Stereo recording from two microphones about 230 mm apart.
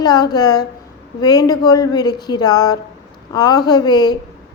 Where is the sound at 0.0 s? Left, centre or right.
Centre.